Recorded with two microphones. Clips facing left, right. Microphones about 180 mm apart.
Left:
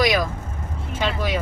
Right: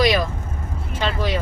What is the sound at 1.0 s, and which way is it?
Speech, 15° left (ahead or behind).